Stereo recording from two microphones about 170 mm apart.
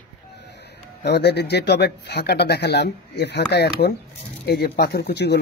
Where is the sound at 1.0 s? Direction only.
75° left (ahead or behind).